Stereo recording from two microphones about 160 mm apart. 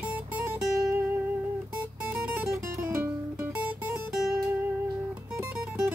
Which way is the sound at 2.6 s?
15° right (ahead or behind).